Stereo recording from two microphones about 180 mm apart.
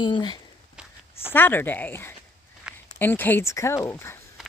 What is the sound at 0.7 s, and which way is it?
Walk, 5° right (ahead or behind).